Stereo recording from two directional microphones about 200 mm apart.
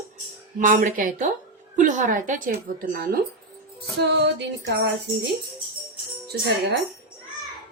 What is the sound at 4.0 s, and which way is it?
Music, 55° right (ahead or behind).